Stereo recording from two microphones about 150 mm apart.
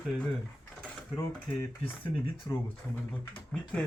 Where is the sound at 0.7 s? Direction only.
5° left (ahead or behind).